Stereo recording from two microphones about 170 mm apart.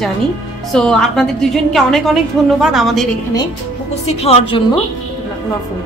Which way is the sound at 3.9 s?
35° left (ahead or behind).